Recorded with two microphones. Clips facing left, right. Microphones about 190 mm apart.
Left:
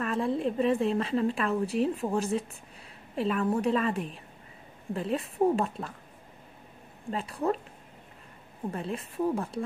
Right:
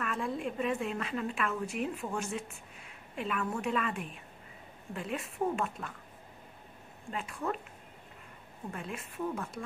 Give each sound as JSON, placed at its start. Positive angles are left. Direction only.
{"t": 0.0, "sound": "a woman's voice", "side_deg": 35}
{"t": 7.1, "sound": "a woman's voice", "side_deg": 35}
{"t": 8.7, "sound": "a woman's voice", "side_deg": 35}